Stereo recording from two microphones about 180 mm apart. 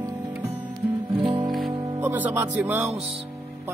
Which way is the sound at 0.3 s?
10° right (ahead or behind).